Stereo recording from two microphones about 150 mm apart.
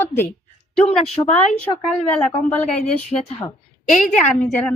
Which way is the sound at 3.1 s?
25° left (ahead or behind).